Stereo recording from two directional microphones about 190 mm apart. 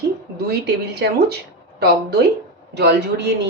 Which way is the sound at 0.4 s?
55° right (ahead or behind).